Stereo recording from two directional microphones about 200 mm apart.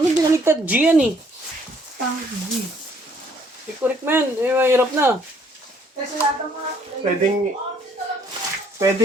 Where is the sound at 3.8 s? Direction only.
10° right (ahead or behind).